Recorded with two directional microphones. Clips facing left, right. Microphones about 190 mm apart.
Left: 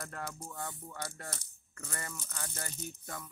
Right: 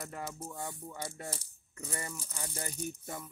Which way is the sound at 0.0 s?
5° right (ahead or behind).